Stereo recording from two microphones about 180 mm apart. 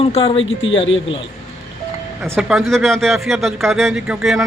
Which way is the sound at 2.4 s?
Centre (ahead or behind).